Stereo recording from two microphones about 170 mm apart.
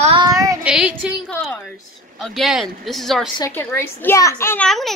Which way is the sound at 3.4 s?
15° left (ahead or behind).